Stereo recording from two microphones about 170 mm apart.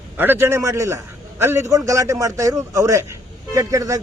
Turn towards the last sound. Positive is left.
turn(degrees=-20)  # may be behind; listen again after turning